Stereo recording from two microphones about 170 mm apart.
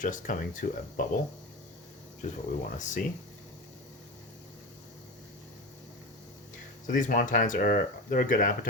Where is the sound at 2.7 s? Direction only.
50° left (ahead or behind).